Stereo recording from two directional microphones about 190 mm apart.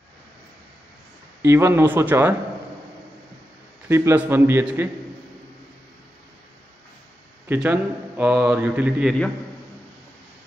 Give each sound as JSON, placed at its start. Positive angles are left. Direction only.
{"t": 1.4, "sound": "a man's voice", "side_deg": -15}
{"t": 3.9, "sound": "a man's voice", "side_deg": -10}
{"t": 7.4, "sound": "a man's voice", "side_deg": -10}